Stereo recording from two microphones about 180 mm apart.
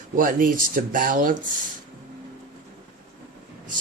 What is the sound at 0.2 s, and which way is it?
A man's voice, 50° right (ahead or behind).